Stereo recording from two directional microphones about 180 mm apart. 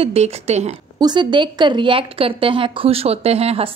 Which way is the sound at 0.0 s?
35° right (ahead or behind).